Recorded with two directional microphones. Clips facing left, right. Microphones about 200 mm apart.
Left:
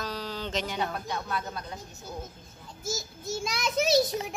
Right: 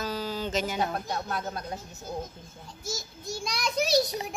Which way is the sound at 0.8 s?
40° right (ahead or behind).